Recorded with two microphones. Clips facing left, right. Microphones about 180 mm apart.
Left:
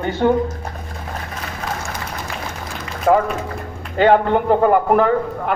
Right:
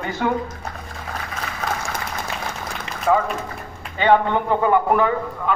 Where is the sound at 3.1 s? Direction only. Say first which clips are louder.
Left 4 dB; 50° left (ahead or behind).